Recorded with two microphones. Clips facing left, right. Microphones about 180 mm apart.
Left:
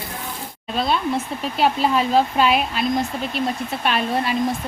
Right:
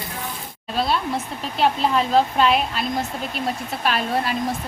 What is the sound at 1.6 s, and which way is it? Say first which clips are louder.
Speech: left 1 dB; 5° left (ahead or behind).